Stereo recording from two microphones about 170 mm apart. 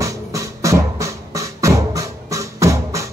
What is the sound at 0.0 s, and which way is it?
Music, 20° right (ahead or behind).